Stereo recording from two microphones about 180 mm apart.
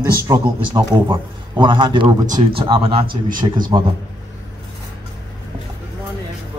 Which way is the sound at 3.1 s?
50° right (ahead or behind).